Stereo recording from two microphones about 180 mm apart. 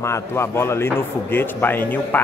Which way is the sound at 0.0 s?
15° left (ahead or behind).